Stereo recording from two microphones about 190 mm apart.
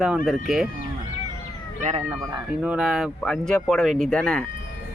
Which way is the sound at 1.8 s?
40° right (ahead or behind).